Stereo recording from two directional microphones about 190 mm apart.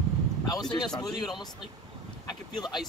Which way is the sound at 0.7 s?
20° left (ahead or behind).